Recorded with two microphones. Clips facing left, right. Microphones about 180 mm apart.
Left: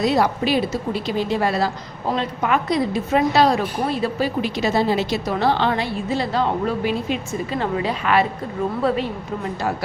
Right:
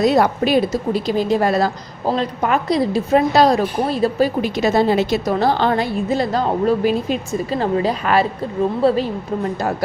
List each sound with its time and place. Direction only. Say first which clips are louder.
0.0 s a woman's voice: right 4 dB; 50° right (ahead or behind)
2.0 s a woman's voice: right 3 dB; 35° right (ahead or behind)